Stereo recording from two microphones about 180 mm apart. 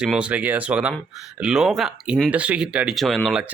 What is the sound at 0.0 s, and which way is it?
Speech, 5° right (ahead or behind).